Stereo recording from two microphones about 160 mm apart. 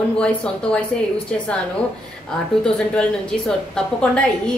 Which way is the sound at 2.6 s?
5° left (ahead or behind).